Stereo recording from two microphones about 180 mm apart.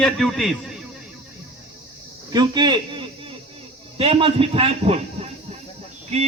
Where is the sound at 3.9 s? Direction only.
30° right (ahead or behind).